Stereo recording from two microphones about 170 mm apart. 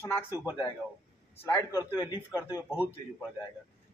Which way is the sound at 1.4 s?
15° left (ahead or behind).